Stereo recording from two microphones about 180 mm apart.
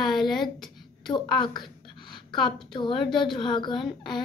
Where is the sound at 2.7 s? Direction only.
25° left (ahead or behind).